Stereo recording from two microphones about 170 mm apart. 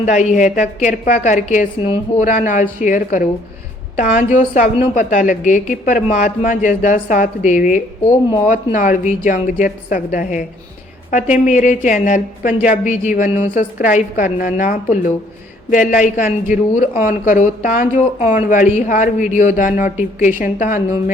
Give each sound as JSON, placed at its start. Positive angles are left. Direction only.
{"t": 0.0, "sound": "speech", "side_deg": 45}